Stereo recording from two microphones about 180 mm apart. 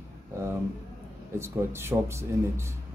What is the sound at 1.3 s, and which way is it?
Speech, 15° right (ahead or behind).